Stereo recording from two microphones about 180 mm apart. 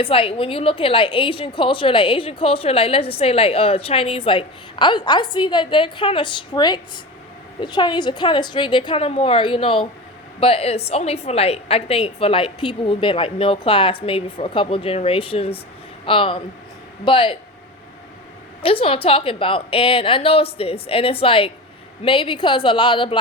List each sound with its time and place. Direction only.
0.0 s a woman's voice: 30° left (ahead or behind)
18.6 s a woman's voice: 30° left (ahead or behind)